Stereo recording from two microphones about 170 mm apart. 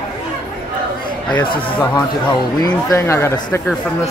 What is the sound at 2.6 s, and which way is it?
Speech, 20° left (ahead or behind).